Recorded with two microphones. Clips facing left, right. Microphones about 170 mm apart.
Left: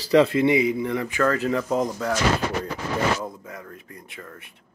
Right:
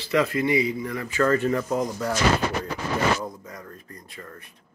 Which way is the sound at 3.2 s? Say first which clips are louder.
Left 1 dB; 5° left (ahead or behind).